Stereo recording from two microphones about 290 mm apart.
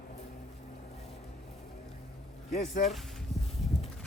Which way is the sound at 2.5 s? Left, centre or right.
Left.